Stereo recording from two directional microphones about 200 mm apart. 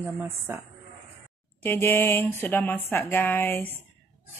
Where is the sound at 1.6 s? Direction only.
10° left (ahead or behind).